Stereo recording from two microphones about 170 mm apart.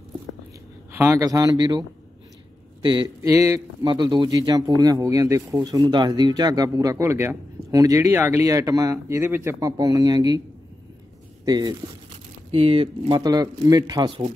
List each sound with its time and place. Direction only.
0.9 s speech: 15° right (ahead or behind)
3.2 s speech: 15° right (ahead or behind)
11.4 s speech: 25° right (ahead or behind)